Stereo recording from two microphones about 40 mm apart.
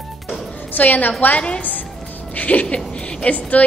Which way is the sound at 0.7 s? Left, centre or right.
Left.